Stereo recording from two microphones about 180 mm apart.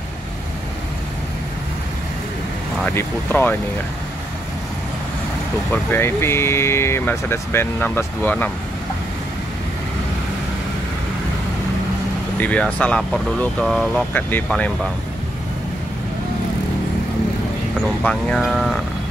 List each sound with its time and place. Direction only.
2.8 s speech: 10° left (ahead or behind)
5.7 s speech: 10° left (ahead or behind)
12.4 s speech: 10° left (ahead or behind)
18.0 s speech: centre (ahead or behind)